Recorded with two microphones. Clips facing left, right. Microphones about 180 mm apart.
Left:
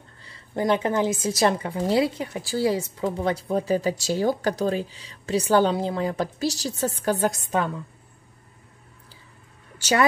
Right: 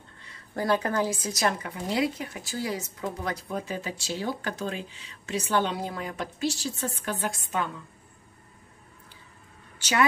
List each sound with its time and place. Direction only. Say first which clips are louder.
0.6 s a woman's voice: left 4 dB; 20° left (ahead or behind); by 7.7 s 40° left (ahead or behind)